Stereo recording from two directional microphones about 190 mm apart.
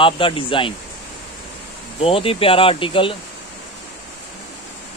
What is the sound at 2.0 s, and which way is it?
Speech, 30° left (ahead or behind).